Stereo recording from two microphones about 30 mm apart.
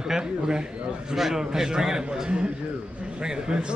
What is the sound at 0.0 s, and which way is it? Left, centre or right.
A man's voice, right.